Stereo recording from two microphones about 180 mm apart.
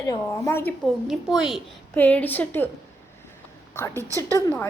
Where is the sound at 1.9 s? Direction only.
10° left (ahead or behind).